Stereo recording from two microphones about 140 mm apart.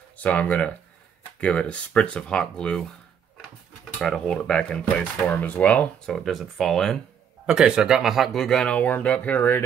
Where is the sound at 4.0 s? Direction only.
5° left (ahead or behind).